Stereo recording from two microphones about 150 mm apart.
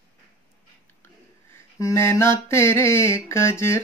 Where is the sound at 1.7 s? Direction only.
20° left (ahead or behind).